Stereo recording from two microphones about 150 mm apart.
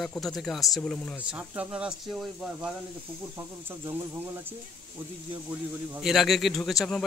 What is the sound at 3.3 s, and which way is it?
Speech, 15° right (ahead or behind).